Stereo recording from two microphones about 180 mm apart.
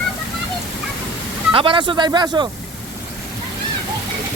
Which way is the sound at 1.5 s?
30° right (ahead or behind).